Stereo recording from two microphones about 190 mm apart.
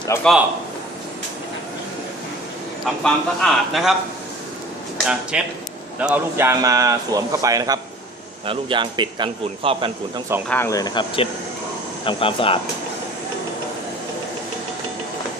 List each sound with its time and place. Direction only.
0.1 s a man's voice: 15° left (ahead or behind)
2.8 s speech: centre (ahead or behind)
5.3 s a man's voice: 5° right (ahead or behind); by 10.2 s 30° right (ahead or behind)
10.5 s speech: 15° left (ahead or behind)